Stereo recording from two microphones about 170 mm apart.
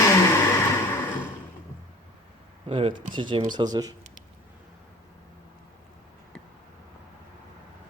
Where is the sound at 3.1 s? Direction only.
30° right (ahead or behind).